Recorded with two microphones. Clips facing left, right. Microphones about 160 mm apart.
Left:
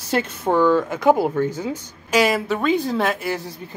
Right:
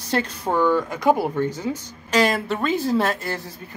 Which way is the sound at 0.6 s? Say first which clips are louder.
Left 2 dB; 15° right (ahead or behind).